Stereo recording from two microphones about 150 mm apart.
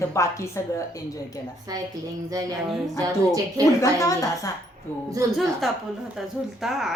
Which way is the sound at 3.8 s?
20° left (ahead or behind).